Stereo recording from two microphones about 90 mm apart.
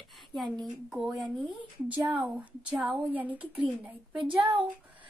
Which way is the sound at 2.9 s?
15° right (ahead or behind).